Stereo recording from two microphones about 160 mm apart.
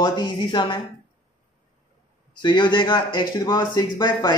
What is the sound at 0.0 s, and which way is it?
Speech, 30° left (ahead or behind).